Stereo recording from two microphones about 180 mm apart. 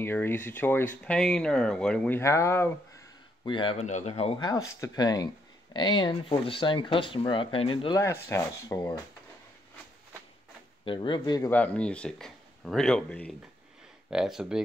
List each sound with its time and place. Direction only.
0.0 s speech: 10° left (ahead or behind)
3.4 s speech: 30° left (ahead or behind)
4.5 s speech: 20° left (ahead or behind)
8.0 s speech: 15° left (ahead or behind)
10.9 s speech: 25° left (ahead or behind)
11.5 s speech: 10° left (ahead or behind)